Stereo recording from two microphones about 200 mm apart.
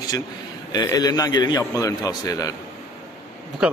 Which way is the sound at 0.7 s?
20° left (ahead or behind).